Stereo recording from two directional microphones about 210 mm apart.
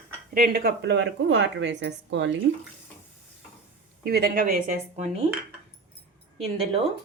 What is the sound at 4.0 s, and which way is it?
Speech, 50° right (ahead or behind).